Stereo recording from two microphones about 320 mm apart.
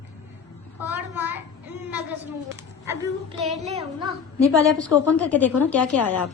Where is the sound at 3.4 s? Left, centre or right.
Centre.